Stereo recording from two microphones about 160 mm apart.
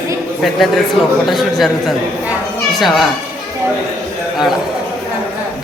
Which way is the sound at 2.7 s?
Centre (ahead or behind).